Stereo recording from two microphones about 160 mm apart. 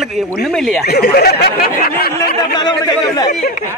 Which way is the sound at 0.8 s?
75° left (ahead or behind).